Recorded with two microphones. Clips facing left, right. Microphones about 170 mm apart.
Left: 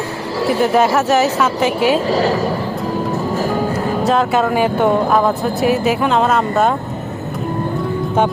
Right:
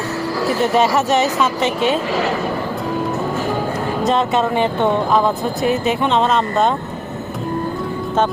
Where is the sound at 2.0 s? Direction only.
35° left (ahead or behind).